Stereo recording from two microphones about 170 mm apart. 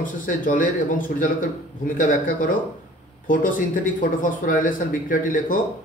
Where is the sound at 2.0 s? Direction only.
50° left (ahead or behind).